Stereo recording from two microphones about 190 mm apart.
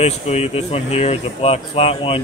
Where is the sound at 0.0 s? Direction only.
35° left (ahead or behind).